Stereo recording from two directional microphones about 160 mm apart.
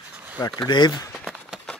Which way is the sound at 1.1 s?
Centre (ahead or behind).